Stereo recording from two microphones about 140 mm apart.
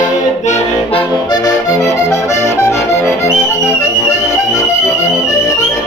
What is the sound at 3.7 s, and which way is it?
Music, 20° left (ahead or behind).